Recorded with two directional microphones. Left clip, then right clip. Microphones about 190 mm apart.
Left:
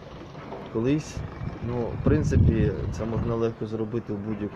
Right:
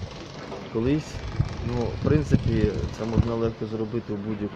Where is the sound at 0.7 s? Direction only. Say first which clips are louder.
Even; 10° left (ahead or behind).